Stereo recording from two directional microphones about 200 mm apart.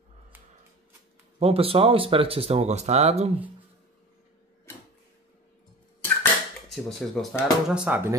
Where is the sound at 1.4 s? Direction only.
30° right (ahead or behind).